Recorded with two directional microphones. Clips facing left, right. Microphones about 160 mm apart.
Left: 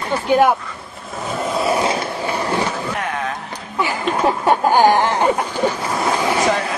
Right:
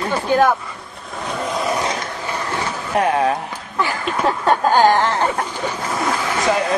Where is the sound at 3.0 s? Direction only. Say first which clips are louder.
Right 7 dB; 30° right (ahead or behind).